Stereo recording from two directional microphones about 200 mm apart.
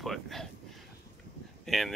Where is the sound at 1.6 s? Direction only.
Centre (ahead or behind).